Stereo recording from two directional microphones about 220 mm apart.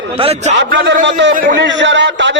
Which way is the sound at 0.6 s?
55° right (ahead or behind).